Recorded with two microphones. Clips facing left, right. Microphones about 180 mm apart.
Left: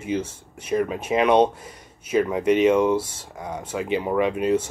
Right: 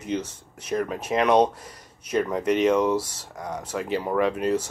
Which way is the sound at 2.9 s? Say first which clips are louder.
Left 2 dB; 25° left (ahead or behind).